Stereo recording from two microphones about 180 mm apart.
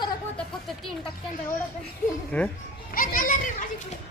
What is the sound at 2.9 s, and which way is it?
Children playing, 50° left (ahead or behind).